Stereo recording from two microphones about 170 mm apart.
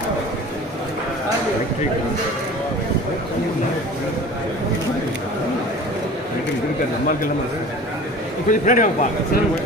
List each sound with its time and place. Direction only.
8.5 s a man's voice: 50° left (ahead or behind)